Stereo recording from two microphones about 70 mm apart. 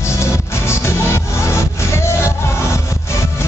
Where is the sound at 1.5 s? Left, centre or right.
Left.